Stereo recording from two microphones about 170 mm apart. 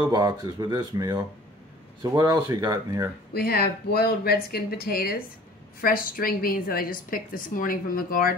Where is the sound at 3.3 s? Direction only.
70° left (ahead or behind).